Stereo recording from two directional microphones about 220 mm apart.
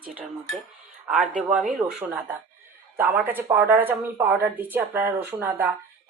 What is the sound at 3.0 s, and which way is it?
Speech, 10° right (ahead or behind).